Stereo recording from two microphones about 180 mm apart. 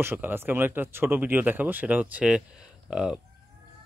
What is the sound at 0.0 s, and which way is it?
Speech, 10° right (ahead or behind).